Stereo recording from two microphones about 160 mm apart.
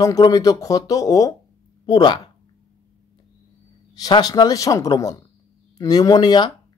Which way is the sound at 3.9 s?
25° left (ahead or behind).